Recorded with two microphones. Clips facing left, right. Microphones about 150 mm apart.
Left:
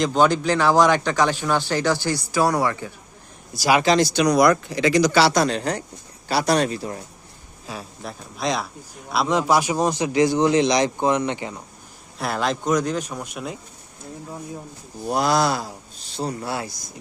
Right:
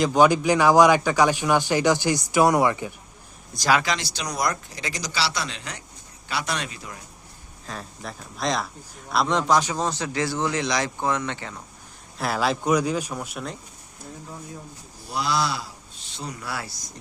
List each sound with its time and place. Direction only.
0.0 s speech: 10° right (ahead or behind)
3.5 s speech: 5° left (ahead or behind)
3.8 s speech: 40° left (ahead or behind)
4.1 s speech: 65° left (ahead or behind); by 7.0 s 35° left (ahead or behind)
7.7 s speech: 5° left (ahead or behind)
12.1 s speech: centre (ahead or behind)
15.0 s speech: 45° left (ahead or behind); by 16.6 s 25° left (ahead or behind)